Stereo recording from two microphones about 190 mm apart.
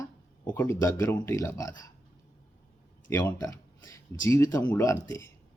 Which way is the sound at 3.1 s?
20° left (ahead or behind).